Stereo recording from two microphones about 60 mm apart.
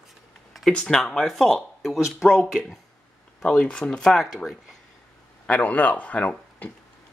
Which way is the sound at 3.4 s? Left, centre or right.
Centre.